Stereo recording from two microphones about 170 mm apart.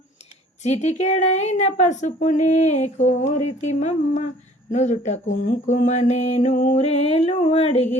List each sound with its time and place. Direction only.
0.6 s mantra: 40° left (ahead or behind)
4.7 s speech: 45° left (ahead or behind)
5.6 s mantra: 45° left (ahead or behind)